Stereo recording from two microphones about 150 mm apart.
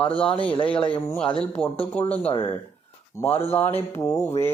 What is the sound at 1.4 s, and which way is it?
Speech, 10° left (ahead or behind).